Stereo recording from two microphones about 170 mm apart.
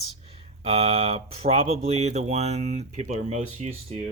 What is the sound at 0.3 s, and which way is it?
Speech, 35° right (ahead or behind).